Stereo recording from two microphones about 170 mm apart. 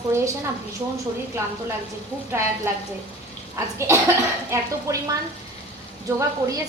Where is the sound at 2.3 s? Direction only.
15° right (ahead or behind).